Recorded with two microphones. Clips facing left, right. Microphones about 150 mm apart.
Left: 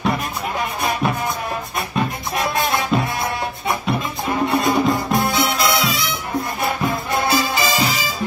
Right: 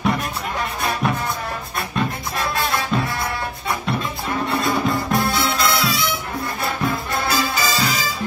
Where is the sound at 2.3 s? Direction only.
20° left (ahead or behind).